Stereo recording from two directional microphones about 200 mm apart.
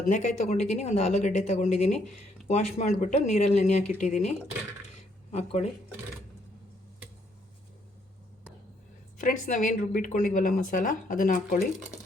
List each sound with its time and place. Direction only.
0.1 s speech: 35° left (ahead or behind)
9.1 s speech: 40° left (ahead or behind)